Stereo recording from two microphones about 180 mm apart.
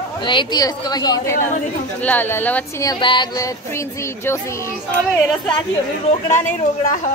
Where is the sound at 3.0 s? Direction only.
25° left (ahead or behind).